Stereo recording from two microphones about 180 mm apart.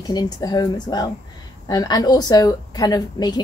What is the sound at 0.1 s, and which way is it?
A woman's voice, 20° left (ahead or behind).